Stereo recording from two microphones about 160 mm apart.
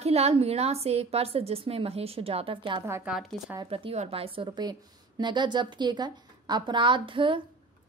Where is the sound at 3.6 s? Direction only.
35° right (ahead or behind).